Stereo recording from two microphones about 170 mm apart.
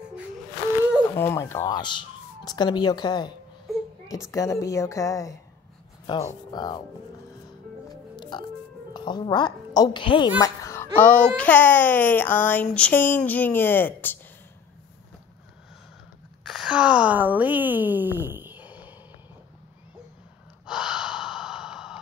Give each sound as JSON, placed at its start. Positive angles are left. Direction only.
{"t": 1.0, "sound": "speech", "side_deg": 15}
{"t": 1.8, "sound": "a woman's voice", "side_deg": 25}
{"t": 7.9, "sound": "music", "side_deg": 25}
{"t": 8.9, "sound": "a woman's voice", "side_deg": 25}
{"t": 16.4, "sound": "speech", "side_deg": -5}
{"t": 20.6, "sound": "gasp", "side_deg": -5}